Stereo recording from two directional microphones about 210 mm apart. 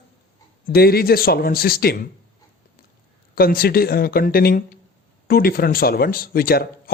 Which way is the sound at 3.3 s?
45° left (ahead or behind).